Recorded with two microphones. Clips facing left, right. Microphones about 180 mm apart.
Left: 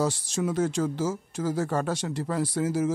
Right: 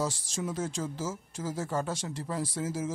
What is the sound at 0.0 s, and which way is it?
A man's voice, 65° left (ahead or behind).